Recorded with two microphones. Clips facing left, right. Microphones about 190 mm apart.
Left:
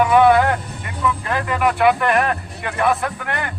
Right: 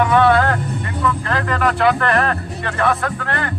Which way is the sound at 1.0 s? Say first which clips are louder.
Even; 10° left (ahead or behind).